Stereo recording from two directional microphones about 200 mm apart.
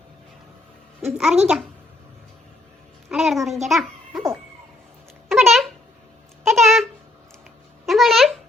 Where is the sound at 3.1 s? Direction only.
Centre (ahead or behind).